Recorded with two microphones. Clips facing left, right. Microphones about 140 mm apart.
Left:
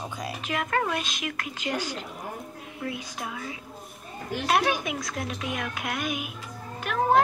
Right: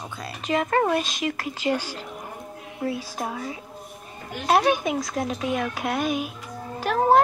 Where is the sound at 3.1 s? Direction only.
35° right (ahead or behind).